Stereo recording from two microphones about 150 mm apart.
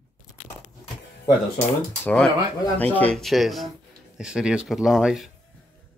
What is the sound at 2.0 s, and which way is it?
Speech, 10° left (ahead or behind).